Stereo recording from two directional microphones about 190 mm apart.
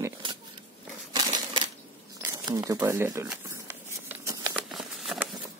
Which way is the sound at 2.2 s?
20° right (ahead or behind).